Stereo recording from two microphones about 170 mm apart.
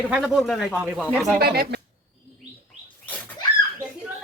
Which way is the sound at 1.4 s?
70° right (ahead or behind).